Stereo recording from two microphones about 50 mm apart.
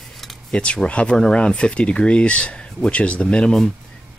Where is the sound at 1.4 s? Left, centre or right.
Left.